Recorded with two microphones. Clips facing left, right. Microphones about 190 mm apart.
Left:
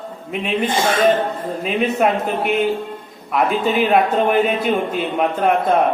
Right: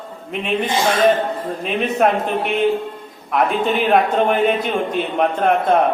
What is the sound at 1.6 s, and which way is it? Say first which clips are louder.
Speech: even; centre (ahead or behind).